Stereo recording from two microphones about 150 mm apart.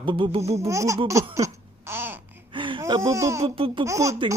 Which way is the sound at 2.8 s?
20° right (ahead or behind).